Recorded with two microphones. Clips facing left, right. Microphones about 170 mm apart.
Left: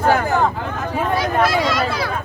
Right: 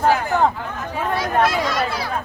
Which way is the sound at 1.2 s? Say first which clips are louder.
Even; 90° left.